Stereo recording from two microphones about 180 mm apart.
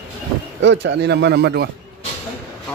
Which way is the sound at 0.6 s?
85° right.